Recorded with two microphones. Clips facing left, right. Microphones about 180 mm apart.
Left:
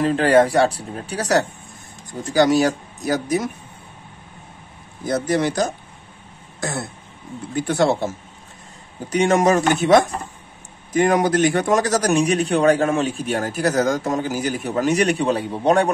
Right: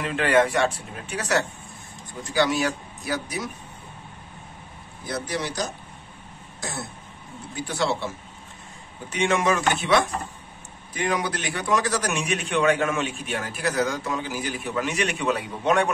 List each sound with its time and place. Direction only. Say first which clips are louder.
0.0 s a man's voice: left 6 dB; 35° left (ahead or behind)
5.0 s speech: left 9 dB; 45° left (ahead or behind)
7.5 s speech: left 8 dB; 55° left (ahead or behind)
9.1 s a man's voice: left 6 dB; 40° left (ahead or behind)